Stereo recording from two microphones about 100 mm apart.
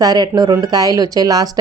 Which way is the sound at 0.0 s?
40° right (ahead or behind).